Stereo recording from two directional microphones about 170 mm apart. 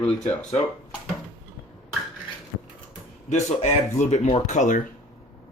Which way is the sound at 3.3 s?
45° left (ahead or behind).